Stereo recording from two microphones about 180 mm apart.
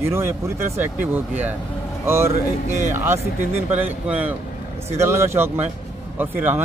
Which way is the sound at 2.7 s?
15° right (ahead or behind).